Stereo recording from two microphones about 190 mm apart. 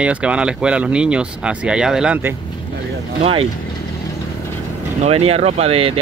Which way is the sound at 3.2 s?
30° right (ahead or behind).